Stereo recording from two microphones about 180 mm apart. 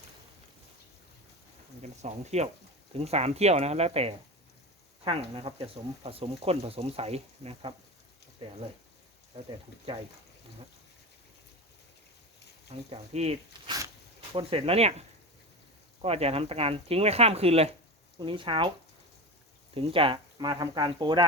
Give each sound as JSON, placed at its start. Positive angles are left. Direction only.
{"t": 1.8, "sound": "speech", "side_deg": -40}
{"t": 12.9, "sound": "speech", "side_deg": -35}
{"t": 13.7, "sound": "a sound", "side_deg": -20}
{"t": 14.3, "sound": "speech", "side_deg": -30}
{"t": 19.7, "sound": "speech", "side_deg": -30}